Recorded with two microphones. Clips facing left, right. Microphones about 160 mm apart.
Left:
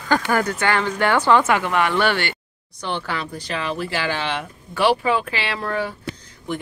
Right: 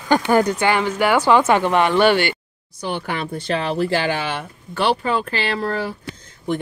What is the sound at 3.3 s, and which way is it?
Speech, 30° right (ahead or behind).